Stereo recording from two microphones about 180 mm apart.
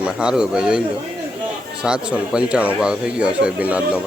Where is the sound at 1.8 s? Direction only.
5° right (ahead or behind).